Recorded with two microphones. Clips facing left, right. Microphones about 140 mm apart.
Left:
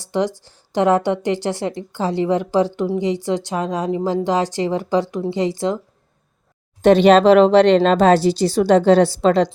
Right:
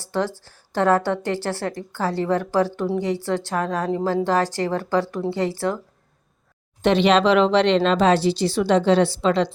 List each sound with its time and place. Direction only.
0.0 s a woman's voice: 15° left (ahead or behind)
6.8 s speech: 45° left (ahead or behind)